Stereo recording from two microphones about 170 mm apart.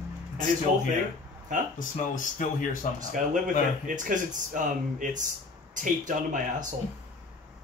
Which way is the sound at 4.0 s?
50° right (ahead or behind).